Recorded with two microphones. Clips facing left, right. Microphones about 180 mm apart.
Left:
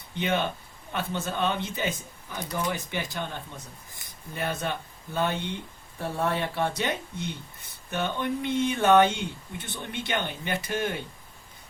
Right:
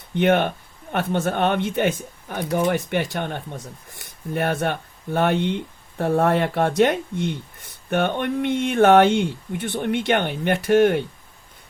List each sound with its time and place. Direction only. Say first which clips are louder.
0.2 s speech: right 9 dB; 60° right (ahead or behind)